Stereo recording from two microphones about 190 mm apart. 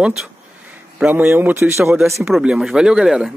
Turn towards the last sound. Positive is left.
turn(degrees=-5)  # may be behind; listen again after turning